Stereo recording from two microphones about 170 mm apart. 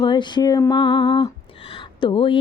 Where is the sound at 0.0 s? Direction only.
25° left (ahead or behind).